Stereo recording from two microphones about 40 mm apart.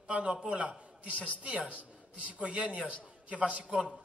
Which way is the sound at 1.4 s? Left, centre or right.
Right.